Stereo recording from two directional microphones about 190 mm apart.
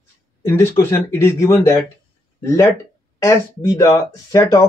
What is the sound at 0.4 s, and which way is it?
Speech, 15° left (ahead or behind).